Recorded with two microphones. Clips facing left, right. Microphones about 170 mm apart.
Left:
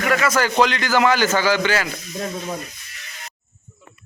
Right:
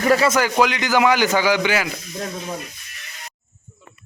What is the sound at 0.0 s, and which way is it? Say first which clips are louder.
Speech: right 3 dB; 30° right (ahead or behind).